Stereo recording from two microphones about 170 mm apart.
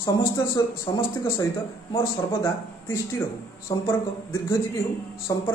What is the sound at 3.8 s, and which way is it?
Speech, 15° left (ahead or behind).